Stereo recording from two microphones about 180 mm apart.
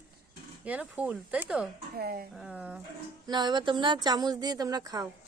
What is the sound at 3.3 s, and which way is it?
Speech, 25° right (ahead or behind).